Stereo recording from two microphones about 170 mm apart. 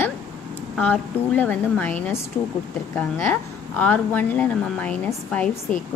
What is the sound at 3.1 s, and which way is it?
Speech, 10° left (ahead or behind).